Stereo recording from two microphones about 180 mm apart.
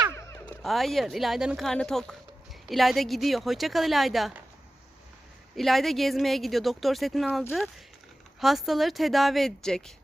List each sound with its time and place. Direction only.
0.1 s a sound: 15° left (ahead or behind)
0.6 s speech: centre (ahead or behind)
5.5 s speech: centre (ahead or behind)